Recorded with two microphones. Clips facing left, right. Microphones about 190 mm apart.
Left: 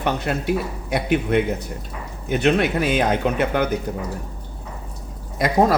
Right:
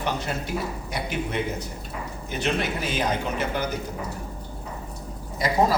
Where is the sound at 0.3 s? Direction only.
65° left (ahead or behind).